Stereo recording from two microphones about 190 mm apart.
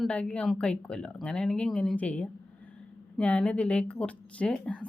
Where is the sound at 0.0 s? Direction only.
5° left (ahead or behind).